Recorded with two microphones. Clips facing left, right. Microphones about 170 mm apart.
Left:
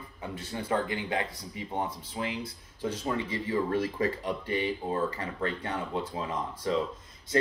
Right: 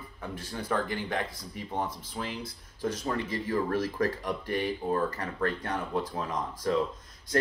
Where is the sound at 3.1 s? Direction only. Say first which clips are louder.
Left 1 dB; 10° left (ahead or behind).